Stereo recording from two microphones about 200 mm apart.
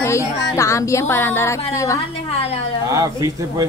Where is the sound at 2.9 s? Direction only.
15° right (ahead or behind).